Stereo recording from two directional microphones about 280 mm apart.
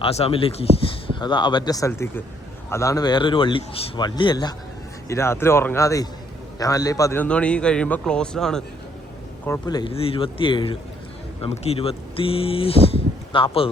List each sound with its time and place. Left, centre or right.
0.0 s a man's voice: left; by 8.6 s centre
9.5 s speech: centre